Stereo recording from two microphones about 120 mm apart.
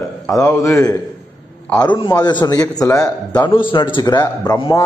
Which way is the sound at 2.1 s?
35° left (ahead or behind).